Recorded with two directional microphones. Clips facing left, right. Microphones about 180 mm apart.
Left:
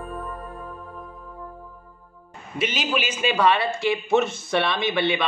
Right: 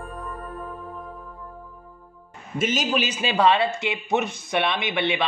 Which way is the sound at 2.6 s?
45° right (ahead or behind).